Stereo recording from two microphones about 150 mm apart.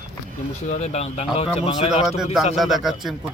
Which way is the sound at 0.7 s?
45° left (ahead or behind).